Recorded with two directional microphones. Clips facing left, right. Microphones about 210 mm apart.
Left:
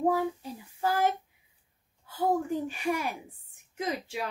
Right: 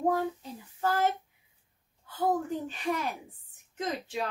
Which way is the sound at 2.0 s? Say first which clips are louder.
Left 1 dB; 10° left (ahead or behind).